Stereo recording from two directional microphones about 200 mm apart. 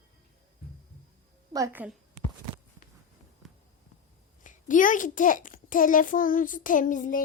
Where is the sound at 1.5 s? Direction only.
15° right (ahead or behind).